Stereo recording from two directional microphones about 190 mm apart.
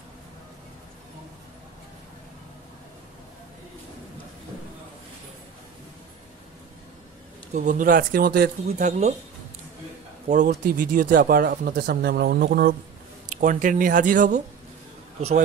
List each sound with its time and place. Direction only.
7.5 s speech: 40° right (ahead or behind)
8.6 s speech: 40° right (ahead or behind)
10.2 s speech: 40° right (ahead or behind); by 12.7 s 55° right (ahead or behind)
13.3 s a man's voice: 45° right (ahead or behind)